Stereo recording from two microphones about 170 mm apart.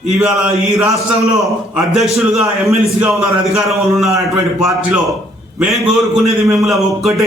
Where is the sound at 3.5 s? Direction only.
Centre (ahead or behind).